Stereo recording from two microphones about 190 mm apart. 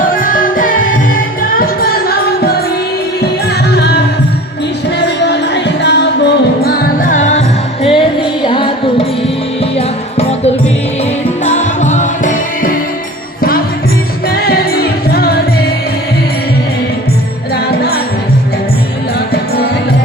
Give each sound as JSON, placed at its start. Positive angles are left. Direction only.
{"t": 0.0, "sound": "music", "side_deg": 45}
{"t": 3.7, "sound": "music", "side_deg": 60}
{"t": 4.9, "sound": "music", "side_deg": 65}
{"t": 14.3, "sound": "music", "side_deg": 55}
{"t": 17.5, "sound": "music", "side_deg": 55}